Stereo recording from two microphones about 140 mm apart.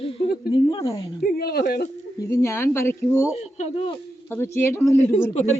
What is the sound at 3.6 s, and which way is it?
Speech, 45° left (ahead or behind).